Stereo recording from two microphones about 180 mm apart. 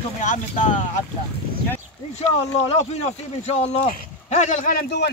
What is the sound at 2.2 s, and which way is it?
Speech, 35° left (ahead or behind).